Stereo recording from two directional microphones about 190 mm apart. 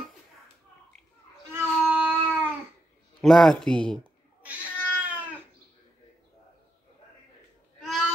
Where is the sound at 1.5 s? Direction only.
10° right (ahead or behind).